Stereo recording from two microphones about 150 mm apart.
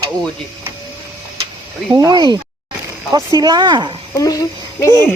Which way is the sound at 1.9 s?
25° right (ahead or behind).